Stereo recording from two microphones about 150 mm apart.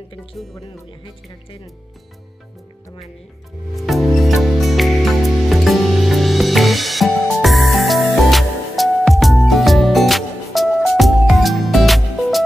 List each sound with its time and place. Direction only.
0.6 s speech: 35° left (ahead or behind)
3.7 s music: centre (ahead or behind)